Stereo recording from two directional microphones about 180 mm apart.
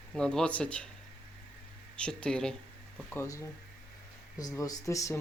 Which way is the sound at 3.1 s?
15° left (ahead or behind).